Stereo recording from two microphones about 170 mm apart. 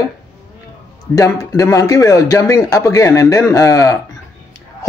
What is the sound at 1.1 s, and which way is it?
Speech, 20° left (ahead or behind).